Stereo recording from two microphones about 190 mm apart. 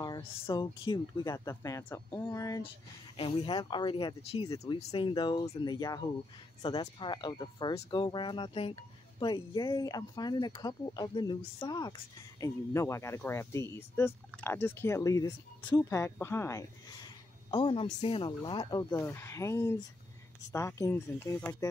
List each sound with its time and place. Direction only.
0.0 s speech: 25° left (ahead or behind)
3.2 s speech: 25° left (ahead or behind)
17.5 s speech: 30° left (ahead or behind); by 21.6 s 10° left (ahead or behind)